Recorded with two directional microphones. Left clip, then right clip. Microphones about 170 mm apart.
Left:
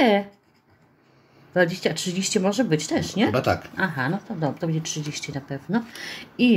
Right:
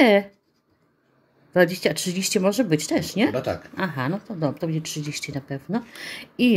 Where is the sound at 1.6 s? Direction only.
40° right (ahead or behind).